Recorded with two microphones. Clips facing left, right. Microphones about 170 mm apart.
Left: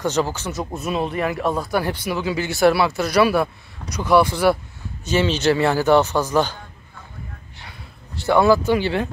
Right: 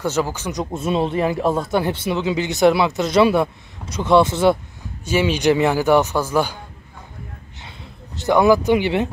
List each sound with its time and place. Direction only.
0.0 s speech: 10° right (ahead or behind)
5.0 s speech: 10° right (ahead or behind)
8.2 s speech: 15° right (ahead or behind)